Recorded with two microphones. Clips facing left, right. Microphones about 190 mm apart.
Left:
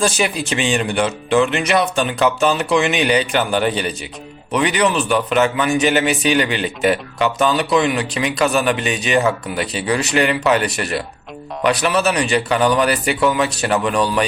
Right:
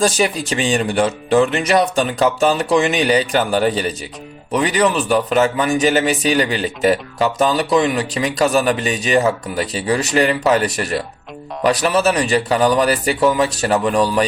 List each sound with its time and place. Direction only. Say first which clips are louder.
0.0 s a man's voice: right 2 dB; 40° right (ahead or behind)